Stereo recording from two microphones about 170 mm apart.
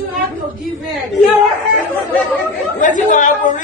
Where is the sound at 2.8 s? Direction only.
50° left (ahead or behind).